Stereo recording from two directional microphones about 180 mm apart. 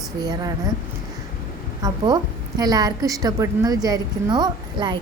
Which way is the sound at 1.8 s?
20° right (ahead or behind).